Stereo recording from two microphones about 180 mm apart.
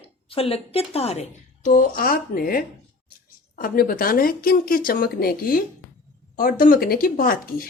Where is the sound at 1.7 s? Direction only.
50° left (ahead or behind).